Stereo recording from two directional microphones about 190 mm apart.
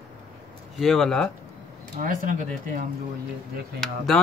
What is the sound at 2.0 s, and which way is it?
Speech, 40° right (ahead or behind).